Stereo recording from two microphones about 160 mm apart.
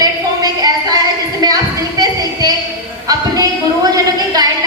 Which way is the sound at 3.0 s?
25° right (ahead or behind).